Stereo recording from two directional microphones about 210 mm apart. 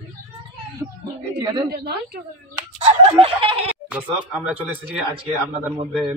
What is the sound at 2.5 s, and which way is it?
Fowl, 25° right (ahead or behind).